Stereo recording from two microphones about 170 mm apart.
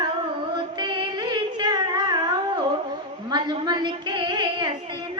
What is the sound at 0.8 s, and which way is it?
Music, 25° right (ahead or behind).